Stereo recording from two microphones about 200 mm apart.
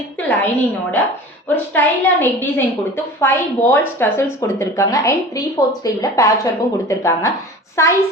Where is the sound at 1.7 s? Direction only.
10° left (ahead or behind).